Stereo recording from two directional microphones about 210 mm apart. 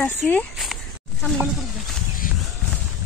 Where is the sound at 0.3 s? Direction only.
5° left (ahead or behind).